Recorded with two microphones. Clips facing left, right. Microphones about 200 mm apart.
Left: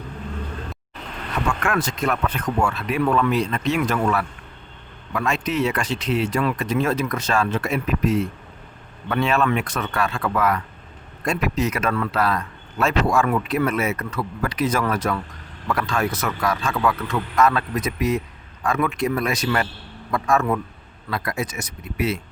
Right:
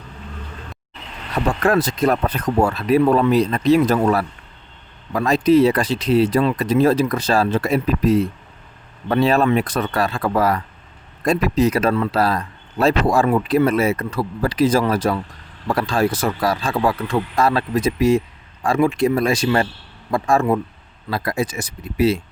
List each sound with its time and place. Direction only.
1.5 s speech: 35° right (ahead or behind)